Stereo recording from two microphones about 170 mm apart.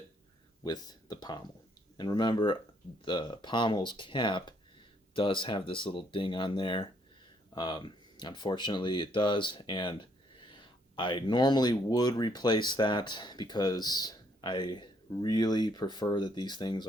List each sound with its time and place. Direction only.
0.6 s speech: 25° left (ahead or behind)